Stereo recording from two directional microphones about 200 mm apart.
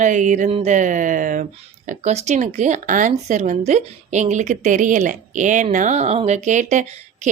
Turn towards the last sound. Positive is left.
turn(degrees=-40)  # may be behind; listen again after turning